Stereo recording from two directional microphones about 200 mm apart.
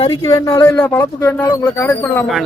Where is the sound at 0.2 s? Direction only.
15° left (ahead or behind).